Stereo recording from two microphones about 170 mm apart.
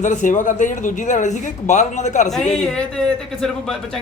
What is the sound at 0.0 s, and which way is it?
Speech, 45° left (ahead or behind).